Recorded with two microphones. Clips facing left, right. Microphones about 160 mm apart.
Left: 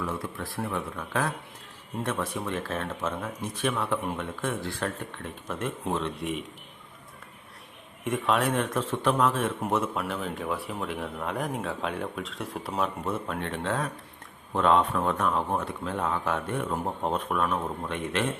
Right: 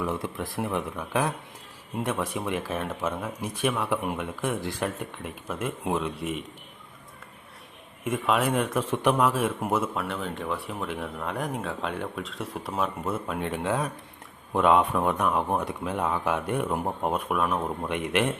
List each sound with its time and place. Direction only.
0.0 s speech: 15° right (ahead or behind); by 6.4 s centre (ahead or behind)
8.0 s speech: centre (ahead or behind)